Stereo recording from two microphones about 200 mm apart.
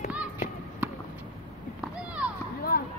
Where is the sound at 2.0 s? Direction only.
5° right (ahead or behind).